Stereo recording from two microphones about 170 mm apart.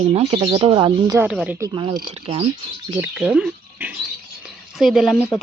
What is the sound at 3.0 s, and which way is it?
Speech, 5° right (ahead or behind).